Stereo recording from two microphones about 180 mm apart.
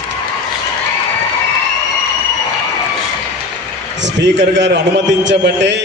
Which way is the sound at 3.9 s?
80° right.